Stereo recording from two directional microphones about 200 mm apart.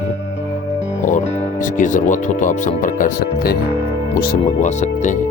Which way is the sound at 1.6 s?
40° left (ahead or behind).